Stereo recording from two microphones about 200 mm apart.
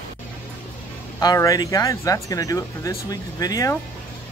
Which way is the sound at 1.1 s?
15° left (ahead or behind).